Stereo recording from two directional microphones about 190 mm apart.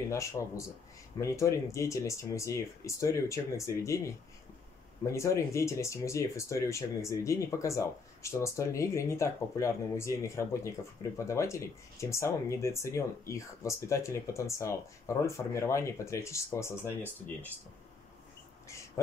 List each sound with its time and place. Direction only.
0.1 s speech: 15° left (ahead or behind)